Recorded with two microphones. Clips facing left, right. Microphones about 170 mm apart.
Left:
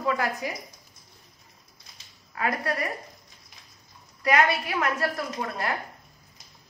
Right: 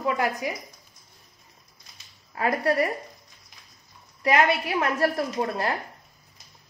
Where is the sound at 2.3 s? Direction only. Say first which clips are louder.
Right 5 dB; 30° right (ahead or behind).